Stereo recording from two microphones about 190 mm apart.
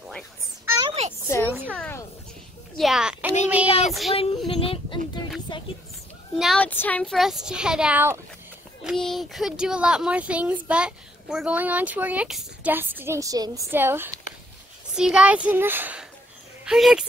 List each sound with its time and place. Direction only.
0.7 s a sound: 20° right (ahead or behind)
1.7 s speech: 5° left (ahead or behind)
2.8 s a child's voice: 5° right (ahead or behind)
3.6 s child singing: 30° left (ahead or behind)
4.5 s a sound: 30° left (ahead or behind)
6.3 s speech: centre (ahead or behind)
8.8 s speech: centre (ahead or behind)